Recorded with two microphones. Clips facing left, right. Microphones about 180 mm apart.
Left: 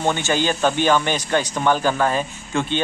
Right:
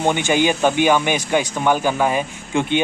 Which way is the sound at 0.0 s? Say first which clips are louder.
Right 3 dB; 15° right (ahead or behind).